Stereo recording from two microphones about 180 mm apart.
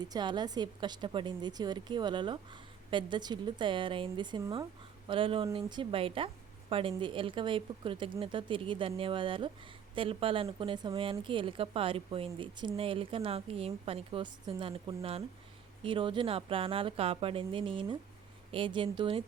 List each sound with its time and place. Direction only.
0.0 s a woman's voice: 25° right (ahead or behind)